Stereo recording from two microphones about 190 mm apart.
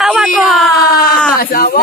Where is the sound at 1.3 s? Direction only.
50° left (ahead or behind).